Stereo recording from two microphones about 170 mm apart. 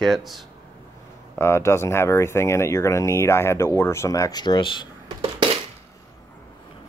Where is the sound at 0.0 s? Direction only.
Centre (ahead or behind).